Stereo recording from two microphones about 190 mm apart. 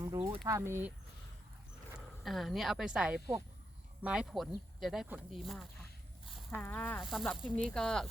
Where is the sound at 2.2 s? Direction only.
Centre (ahead or behind).